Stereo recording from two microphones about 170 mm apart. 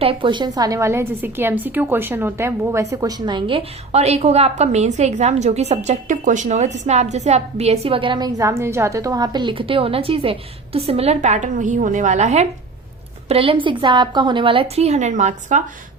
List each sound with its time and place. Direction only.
0.0 s a woman's voice: 30° right (ahead or behind)